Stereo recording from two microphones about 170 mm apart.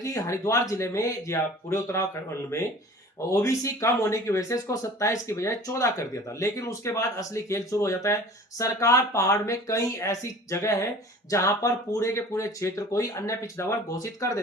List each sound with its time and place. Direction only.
0.0 s speech: 15° left (ahead or behind)
3.2 s speech: 20° left (ahead or behind)